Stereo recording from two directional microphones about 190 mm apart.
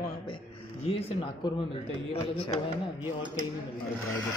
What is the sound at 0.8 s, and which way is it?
Speech, 30° left (ahead or behind).